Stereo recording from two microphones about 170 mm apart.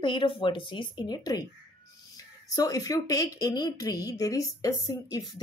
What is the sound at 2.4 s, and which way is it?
Speech, 20° left (ahead or behind).